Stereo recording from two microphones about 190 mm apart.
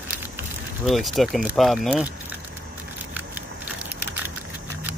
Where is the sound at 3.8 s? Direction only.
10° right (ahead or behind).